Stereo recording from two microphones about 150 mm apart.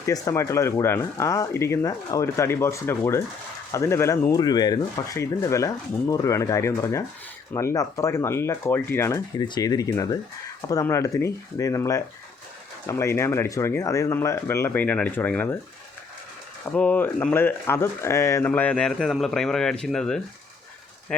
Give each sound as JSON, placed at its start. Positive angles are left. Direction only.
{"t": 0.0, "sound": "speech", "side_deg": 20}
{"t": 16.7, "sound": "speech", "side_deg": 10}